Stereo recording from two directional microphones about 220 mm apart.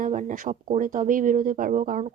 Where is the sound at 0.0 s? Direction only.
35° right (ahead or behind).